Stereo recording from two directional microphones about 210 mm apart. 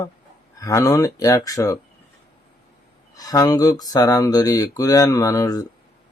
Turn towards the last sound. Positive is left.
turn(degrees=15)  # may be behind; listen again after turning